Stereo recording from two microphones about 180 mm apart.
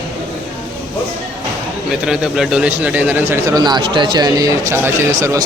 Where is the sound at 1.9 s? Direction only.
5° right (ahead or behind).